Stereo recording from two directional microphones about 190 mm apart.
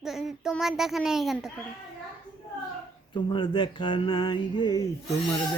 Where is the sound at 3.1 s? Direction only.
25° left (ahead or behind).